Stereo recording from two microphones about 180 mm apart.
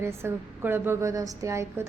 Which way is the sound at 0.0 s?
15° right (ahead or behind).